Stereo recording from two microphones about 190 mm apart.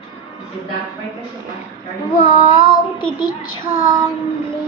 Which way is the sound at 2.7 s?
25° left (ahead or behind).